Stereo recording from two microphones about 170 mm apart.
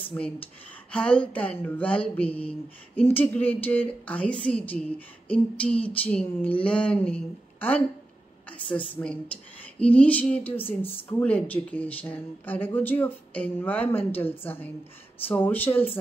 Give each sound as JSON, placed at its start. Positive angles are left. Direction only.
{"t": 0.1, "sound": "speech", "side_deg": 5}
{"t": 8.5, "sound": "speech", "side_deg": 5}